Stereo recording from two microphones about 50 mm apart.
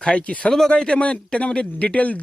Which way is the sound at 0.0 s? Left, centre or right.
Left.